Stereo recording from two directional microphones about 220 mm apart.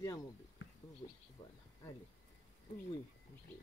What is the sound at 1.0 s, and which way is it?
Speech, 25° left (ahead or behind).